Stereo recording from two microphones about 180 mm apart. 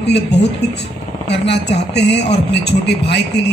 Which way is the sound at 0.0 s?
70° left (ahead or behind).